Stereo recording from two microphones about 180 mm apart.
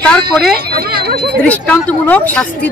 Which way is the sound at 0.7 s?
60° right (ahead or behind).